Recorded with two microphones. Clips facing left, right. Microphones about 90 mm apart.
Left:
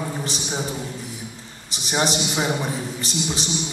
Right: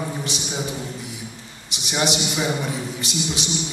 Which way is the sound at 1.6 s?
40° left (ahead or behind).